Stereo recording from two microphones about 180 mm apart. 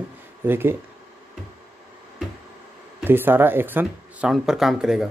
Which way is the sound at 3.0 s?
10° right (ahead or behind).